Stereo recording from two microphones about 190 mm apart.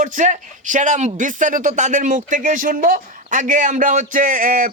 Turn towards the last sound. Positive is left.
turn(degrees=-45)  # may be behind; listen again after turning